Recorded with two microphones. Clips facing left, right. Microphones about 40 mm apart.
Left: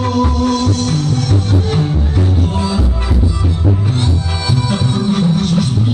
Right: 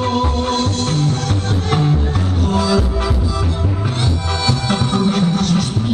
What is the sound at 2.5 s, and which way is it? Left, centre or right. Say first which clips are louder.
Music: right 2 dB; right.